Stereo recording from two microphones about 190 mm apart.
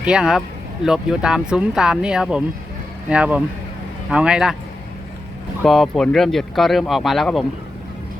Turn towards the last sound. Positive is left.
turn(degrees=0)  # may be behind; listen again after turning